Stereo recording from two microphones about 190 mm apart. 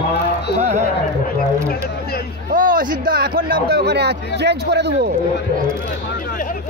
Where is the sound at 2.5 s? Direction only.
45° right (ahead or behind).